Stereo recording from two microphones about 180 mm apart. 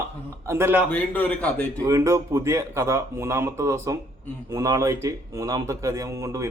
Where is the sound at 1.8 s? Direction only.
15° right (ahead or behind).